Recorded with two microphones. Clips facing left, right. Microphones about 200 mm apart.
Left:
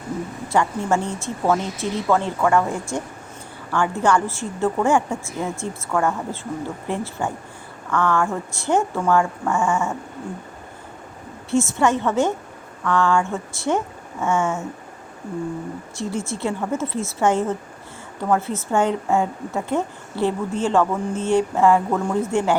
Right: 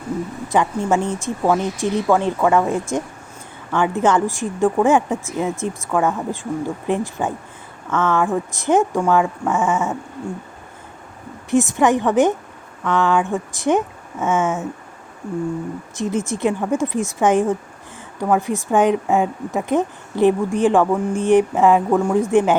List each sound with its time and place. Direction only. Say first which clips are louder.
0.4 s a woman's voice: right 2 dB; 15° right (ahead or behind)
11.5 s a woman's voice: right 3 dB; 15° right (ahead or behind)
16.0 s a woman's voice: right 5 dB; 20° right (ahead or behind)